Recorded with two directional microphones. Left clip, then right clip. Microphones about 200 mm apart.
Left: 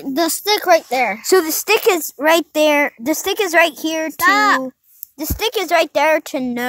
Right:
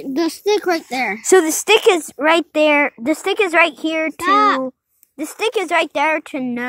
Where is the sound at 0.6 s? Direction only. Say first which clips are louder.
Left 5 dB; 15° left (ahead or behind).